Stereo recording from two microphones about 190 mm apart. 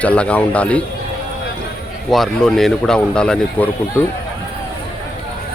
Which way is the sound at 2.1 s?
Centre (ahead or behind).